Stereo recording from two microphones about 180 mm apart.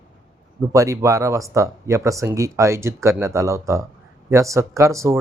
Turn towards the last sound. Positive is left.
turn(degrees=-15)  # may be behind; listen again after turning